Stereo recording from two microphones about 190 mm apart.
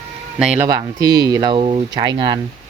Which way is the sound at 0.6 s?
20° right (ahead or behind).